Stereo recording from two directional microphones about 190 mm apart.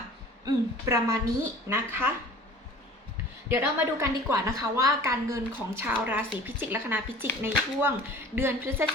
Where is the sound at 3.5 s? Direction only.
15° right (ahead or behind).